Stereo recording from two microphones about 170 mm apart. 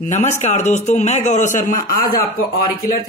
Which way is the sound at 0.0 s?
45° left (ahead or behind).